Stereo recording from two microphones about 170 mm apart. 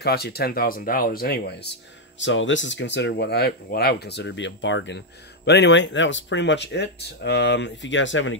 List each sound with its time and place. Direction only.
0.0 s speech: 70° left (ahead or behind)
2.2 s speech: 90° left